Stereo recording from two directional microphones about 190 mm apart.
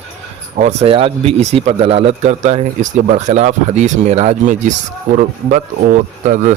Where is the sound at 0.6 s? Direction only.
35° right (ahead or behind).